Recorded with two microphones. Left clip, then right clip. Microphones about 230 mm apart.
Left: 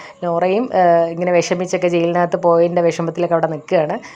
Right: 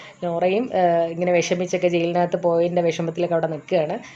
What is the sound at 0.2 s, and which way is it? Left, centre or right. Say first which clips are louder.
Speech: left 4 dB; centre.